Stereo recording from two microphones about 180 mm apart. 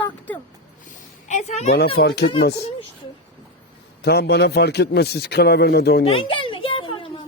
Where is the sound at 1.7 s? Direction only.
65° left (ahead or behind).